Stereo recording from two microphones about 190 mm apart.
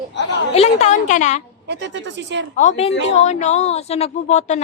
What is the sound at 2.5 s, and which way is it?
Speech, 40° left (ahead or behind).